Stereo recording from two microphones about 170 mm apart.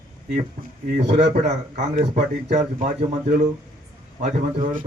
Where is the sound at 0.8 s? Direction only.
45° right (ahead or behind).